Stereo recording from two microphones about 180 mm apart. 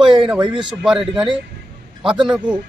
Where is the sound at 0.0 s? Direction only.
25° right (ahead or behind).